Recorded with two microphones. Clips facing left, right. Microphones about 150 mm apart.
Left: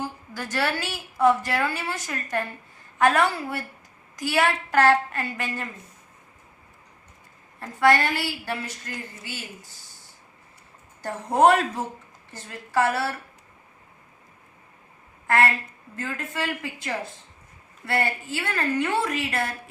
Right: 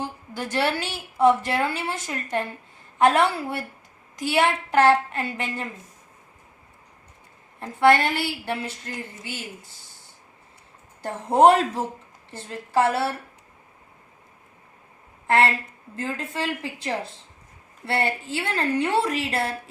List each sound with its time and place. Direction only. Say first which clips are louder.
0.0 s a woman's voice: right 2 dB; 25° right (ahead or behind)
7.6 s a woman's voice: right 2 dB; 25° right (ahead or behind)
11.0 s a woman's voice: right 2 dB; 25° right (ahead or behind)
15.3 s a woman's voice: right 2 dB; 25° right (ahead or behind)